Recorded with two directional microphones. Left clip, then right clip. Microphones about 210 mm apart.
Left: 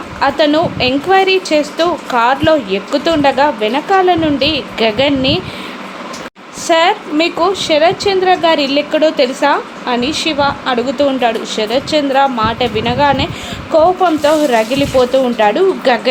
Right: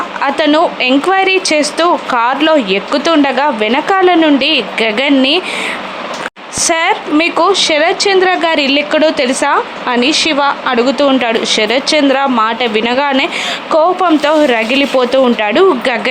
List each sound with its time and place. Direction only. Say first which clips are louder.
0.2 s a woman's voice: right 1 dB; 15° right (ahead or behind)
6.7 s a woman's voice: left 1 dB; 15° right (ahead or behind)